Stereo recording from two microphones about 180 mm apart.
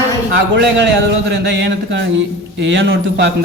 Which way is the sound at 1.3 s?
80° right.